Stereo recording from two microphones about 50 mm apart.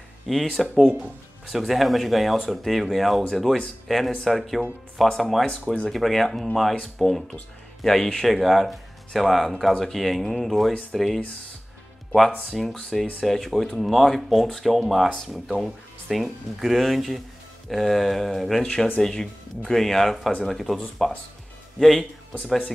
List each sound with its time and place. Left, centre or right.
0.3 s speech: centre
12.4 s speech: centre
18.6 s speech: centre